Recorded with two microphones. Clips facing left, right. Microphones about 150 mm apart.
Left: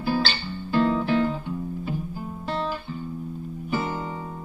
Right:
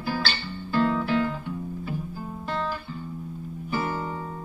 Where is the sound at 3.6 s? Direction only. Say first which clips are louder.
Left 1 dB; 15° left (ahead or behind).